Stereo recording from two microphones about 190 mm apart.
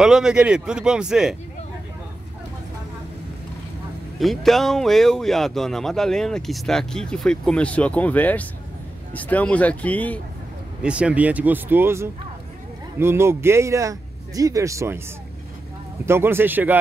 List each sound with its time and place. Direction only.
0.0 s speech: 5° right (ahead or behind)
4.2 s speech: centre (ahead or behind)
10.8 s a man's voice: 5° right (ahead or behind)
16.1 s a man's voice: 10° right (ahead or behind)